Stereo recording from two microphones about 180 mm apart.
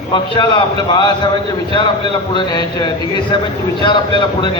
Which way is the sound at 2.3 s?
25° left (ahead or behind).